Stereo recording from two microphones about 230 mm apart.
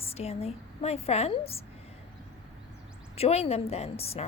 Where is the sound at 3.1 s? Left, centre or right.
Left.